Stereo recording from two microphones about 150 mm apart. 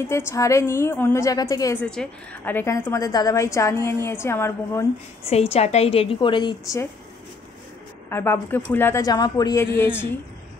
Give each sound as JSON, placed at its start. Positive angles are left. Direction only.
{"t": 0.0, "sound": "a woman's voice", "side_deg": 20}
{"t": 1.8, "sound": "a woman's voice", "side_deg": 10}
{"t": 5.3, "sound": "a woman's voice", "side_deg": 45}
{"t": 8.1, "sound": "a woman's voice", "side_deg": 15}